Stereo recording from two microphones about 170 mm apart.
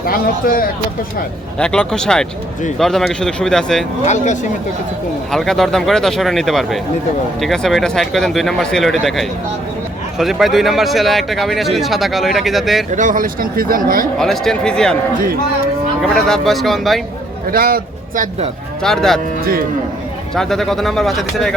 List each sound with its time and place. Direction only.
0.0 s speech: 60° left (ahead or behind)
1.5 s speech: 5° left (ahead or behind)
4.0 s speech: 45° left (ahead or behind)
5.3 s speech: centre (ahead or behind)
12.9 s speech: 50° right (ahead or behind)
14.2 s speech: centre (ahead or behind)
16.0 s speech: centre (ahead or behind)
17.5 s speech: 60° right (ahead or behind)
18.8 s speech: centre (ahead or behind)
20.3 s speech: centre (ahead or behind)